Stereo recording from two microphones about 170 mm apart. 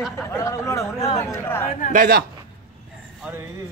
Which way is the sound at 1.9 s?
55° right (ahead or behind).